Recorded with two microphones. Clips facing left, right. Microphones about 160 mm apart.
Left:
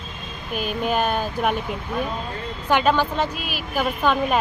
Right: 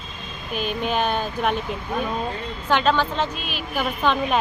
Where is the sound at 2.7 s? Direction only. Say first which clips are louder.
Left 1 dB; 10° left (ahead or behind).